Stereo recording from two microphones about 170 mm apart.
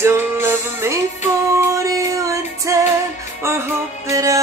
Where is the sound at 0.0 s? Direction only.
15° right (ahead or behind).